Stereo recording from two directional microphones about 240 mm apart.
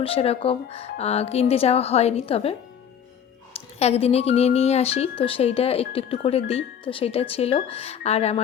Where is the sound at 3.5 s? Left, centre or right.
Left.